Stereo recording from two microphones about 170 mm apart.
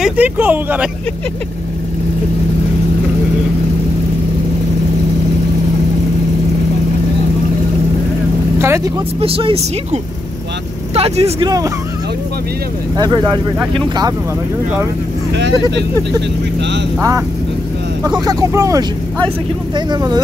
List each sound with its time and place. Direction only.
0.0 s speech: 10° right (ahead or behind)
8.5 s speech: 15° right (ahead or behind)
9.2 s speech: 35° right (ahead or behind)
11.0 s speech: 40° right (ahead or behind)
11.4 s speech: 20° right (ahead or behind)
12.9 s speech: 25° right (ahead or behind)
15.3 s speech: 90° right
18.2 s speech: 20° right (ahead or behind)